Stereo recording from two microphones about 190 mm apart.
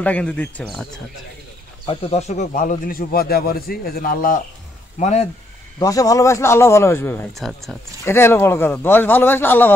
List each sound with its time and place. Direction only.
0.0 s speech: 5° left (ahead or behind)
1.9 s a man's voice: 30° left (ahead or behind); by 4.4 s 50° left (ahead or behind)
4.9 s speech: 35° left (ahead or behind)
5.8 s a man's voice: 20° left (ahead or behind)
7.3 s speech: centre (ahead or behind)
8.0 s a man's voice: 15° left (ahead or behind)